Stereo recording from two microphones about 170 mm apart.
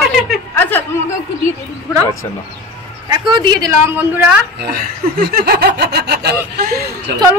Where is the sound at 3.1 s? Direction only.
25° right (ahead or behind); by 4.3 s 10° right (ahead or behind).